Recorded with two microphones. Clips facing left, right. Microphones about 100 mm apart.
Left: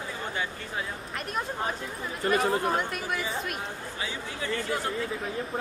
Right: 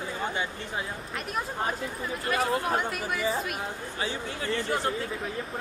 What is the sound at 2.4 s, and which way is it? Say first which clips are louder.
Speech: even; centre (ahead or behind).